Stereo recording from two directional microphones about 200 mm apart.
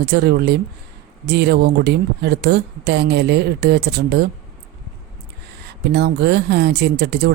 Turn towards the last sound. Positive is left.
turn(degrees=-55)  # may be behind; listen again after turning